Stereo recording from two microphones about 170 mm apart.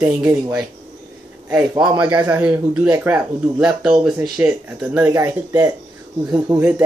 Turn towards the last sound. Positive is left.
turn(degrees=-10)  # may be behind; listen again after turning